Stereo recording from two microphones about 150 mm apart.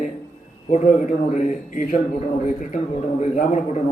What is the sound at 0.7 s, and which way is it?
A man's voice, 55° left (ahead or behind).